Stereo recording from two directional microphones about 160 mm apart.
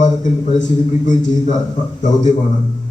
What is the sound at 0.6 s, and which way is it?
Speech, 50° left (ahead or behind).